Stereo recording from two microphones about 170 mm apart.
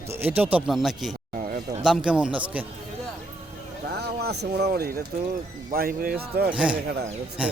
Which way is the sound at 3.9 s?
70° right (ahead or behind).